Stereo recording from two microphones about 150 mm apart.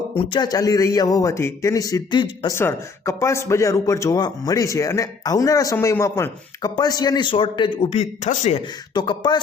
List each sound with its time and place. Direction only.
0.2 s speech: 25° left (ahead or behind)
2.5 s speech: 20° left (ahead or behind); by 7.9 s 35° left (ahead or behind)
7.9 s speech: 50° left (ahead or behind)
9.0 s speech: 30° left (ahead or behind)